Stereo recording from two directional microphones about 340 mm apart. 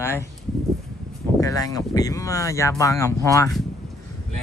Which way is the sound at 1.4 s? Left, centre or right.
Centre.